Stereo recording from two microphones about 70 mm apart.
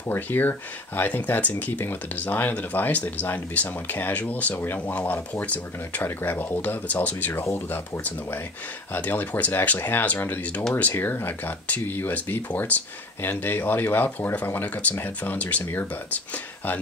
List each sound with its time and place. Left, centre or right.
0.0 s speech: left
8.9 s speech: left